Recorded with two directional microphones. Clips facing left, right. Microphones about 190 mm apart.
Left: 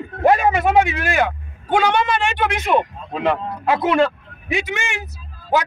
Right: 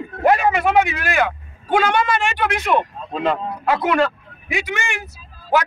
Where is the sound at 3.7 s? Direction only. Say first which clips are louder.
Left 1 dB; 20° left (ahead or behind).